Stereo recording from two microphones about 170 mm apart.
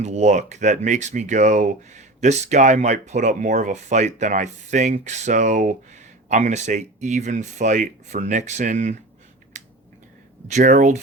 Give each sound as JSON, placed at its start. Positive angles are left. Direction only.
{"t": 0.0, "sound": "speech", "side_deg": -45}
{"t": 9.5, "sound": "a sound", "side_deg": -45}
{"t": 10.5, "sound": "speech", "side_deg": -50}